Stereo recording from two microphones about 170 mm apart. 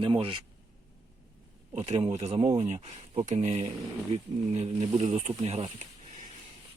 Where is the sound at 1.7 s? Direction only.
40° right (ahead or behind).